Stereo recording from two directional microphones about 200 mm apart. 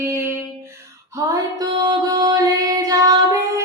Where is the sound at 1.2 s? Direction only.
15° right (ahead or behind).